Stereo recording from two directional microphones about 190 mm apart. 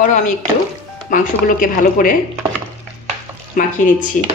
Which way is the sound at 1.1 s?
45° left (ahead or behind).